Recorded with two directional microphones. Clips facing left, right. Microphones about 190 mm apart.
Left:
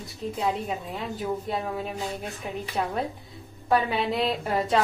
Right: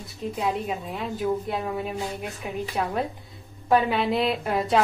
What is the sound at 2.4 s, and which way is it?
Speech, 5° right (ahead or behind).